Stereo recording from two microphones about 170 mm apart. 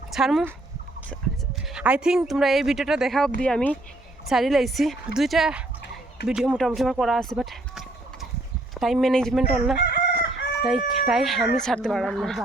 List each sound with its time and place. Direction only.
0.1 s speech: centre (ahead or behind)
1.7 s speech: 5° right (ahead or behind)
9.7 s chicken: 75° left (ahead or behind)
10.6 s speech: centre (ahead or behind)